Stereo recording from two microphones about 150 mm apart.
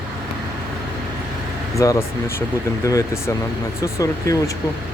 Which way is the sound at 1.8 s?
20° left (ahead or behind).